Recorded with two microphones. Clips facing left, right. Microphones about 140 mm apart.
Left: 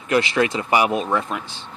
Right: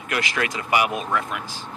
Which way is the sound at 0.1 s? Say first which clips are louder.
Left 7 dB; 25° left (ahead or behind).